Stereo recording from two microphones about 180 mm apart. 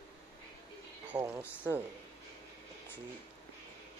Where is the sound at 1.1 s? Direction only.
20° right (ahead or behind).